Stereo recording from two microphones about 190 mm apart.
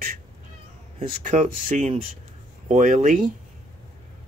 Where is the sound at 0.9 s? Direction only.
40° right (ahead or behind).